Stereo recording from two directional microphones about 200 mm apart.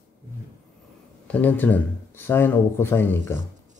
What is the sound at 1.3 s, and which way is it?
Speech, 10° left (ahead or behind).